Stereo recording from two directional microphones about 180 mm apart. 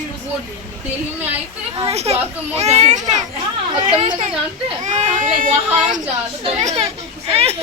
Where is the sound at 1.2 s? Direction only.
10° right (ahead or behind).